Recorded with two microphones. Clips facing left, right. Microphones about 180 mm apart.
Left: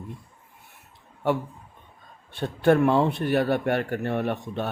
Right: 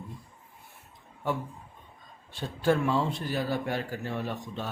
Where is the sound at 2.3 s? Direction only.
60° left (ahead or behind).